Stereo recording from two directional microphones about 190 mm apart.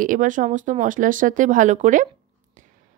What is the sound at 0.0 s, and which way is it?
Speech, 45° right (ahead or behind).